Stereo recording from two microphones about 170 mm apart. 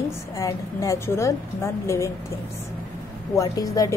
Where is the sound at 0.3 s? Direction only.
20° left (ahead or behind).